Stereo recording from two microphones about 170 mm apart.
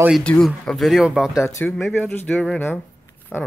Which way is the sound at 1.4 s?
10° left (ahead or behind).